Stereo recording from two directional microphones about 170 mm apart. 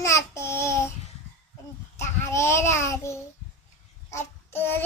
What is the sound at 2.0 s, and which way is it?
Child singing, 15° left (ahead or behind).